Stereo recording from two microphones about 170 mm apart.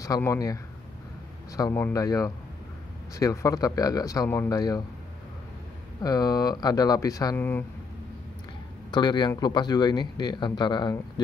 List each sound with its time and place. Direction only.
0.0 s speech: 20° left (ahead or behind)
1.6 s speech: 15° left (ahead or behind)
6.0 s speech: 20° left (ahead or behind)
8.9 s speech: 25° left (ahead or behind)